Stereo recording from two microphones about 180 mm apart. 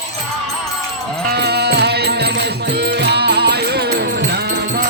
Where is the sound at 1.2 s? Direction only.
65° right (ahead or behind).